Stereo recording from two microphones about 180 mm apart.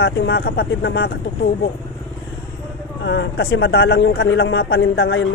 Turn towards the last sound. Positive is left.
turn(degrees=90)